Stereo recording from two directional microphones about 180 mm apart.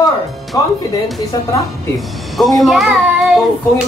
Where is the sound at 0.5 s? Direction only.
20° left (ahead or behind).